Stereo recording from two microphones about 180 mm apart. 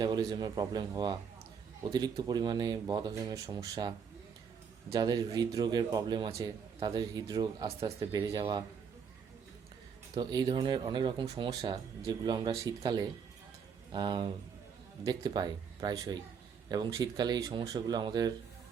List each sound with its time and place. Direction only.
0.0 s speech: 20° right (ahead or behind)
10.2 s speech: 25° right (ahead or behind)